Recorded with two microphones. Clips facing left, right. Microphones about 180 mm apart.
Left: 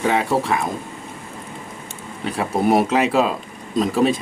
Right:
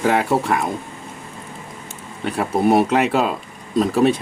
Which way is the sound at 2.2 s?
Centre (ahead or behind).